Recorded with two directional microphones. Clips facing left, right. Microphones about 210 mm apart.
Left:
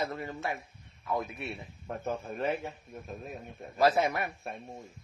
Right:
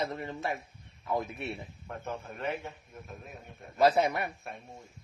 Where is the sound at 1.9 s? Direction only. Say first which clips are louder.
Left 5 dB; 30° left (ahead or behind).